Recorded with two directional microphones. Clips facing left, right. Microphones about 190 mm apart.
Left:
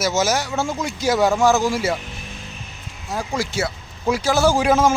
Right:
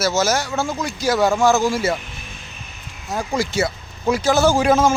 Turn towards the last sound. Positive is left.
turn(degrees=15)  # may be behind; listen again after turning